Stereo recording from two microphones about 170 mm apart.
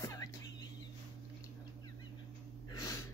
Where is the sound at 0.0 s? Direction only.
20° left (ahead or behind).